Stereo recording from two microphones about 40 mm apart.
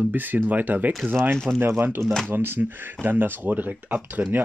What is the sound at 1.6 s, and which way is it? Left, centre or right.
Speech, right.